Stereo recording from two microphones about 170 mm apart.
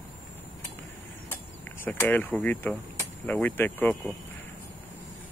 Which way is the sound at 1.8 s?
10° left (ahead or behind).